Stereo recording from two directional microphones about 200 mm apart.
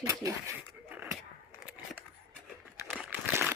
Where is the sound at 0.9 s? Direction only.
10° right (ahead or behind).